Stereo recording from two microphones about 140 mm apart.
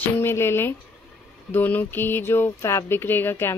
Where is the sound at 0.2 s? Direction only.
15° left (ahead or behind).